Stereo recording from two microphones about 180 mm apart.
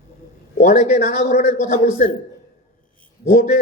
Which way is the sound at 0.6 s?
45° left (ahead or behind).